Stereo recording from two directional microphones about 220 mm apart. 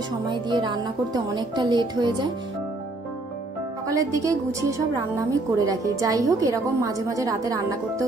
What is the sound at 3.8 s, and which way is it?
A woman's voice, 15° right (ahead or behind).